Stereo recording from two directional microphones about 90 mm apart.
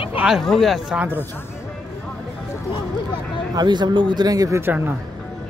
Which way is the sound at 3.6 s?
50° right (ahead or behind).